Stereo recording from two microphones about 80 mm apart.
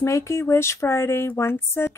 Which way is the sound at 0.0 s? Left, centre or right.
Left.